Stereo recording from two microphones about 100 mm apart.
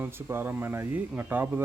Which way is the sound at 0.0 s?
20° right (ahead or behind).